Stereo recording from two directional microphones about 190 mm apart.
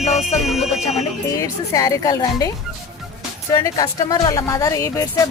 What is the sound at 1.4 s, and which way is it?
Speech, 15° left (ahead or behind).